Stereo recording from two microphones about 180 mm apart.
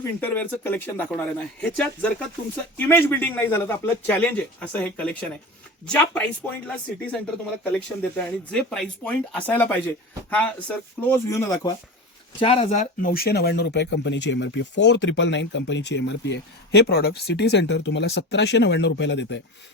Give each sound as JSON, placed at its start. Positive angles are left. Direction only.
{"t": 0.2, "sound": "speech", "side_deg": 10}
{"t": 7.6, "sound": "speech", "side_deg": 5}
{"t": 12.4, "sound": "speech", "side_deg": 30}
{"t": 13.1, "sound": "speech", "side_deg": 60}